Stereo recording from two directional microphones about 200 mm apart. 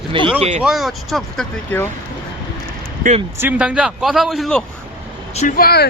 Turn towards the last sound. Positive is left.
turn(degrees=50)  # may be behind; listen again after turning